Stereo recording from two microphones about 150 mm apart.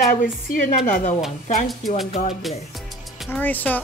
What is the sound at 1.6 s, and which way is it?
Speech, centre (ahead or behind).